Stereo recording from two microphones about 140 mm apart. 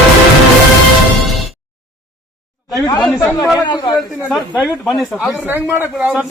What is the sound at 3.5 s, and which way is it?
Speech, 30° left (ahead or behind).